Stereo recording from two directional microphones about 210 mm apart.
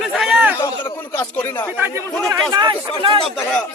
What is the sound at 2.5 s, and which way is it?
Speech, 20° right (ahead or behind).